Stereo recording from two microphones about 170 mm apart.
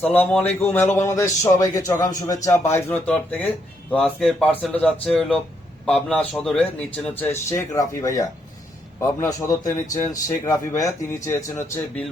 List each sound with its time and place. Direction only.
0.0 s a man's voice: 10° left (ahead or behind)